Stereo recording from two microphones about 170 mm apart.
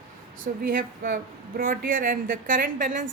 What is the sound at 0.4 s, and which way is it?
Speech, 55° right (ahead or behind).